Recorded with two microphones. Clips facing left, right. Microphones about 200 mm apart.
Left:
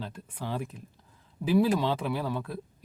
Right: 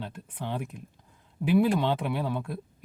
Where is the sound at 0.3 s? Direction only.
10° left (ahead or behind).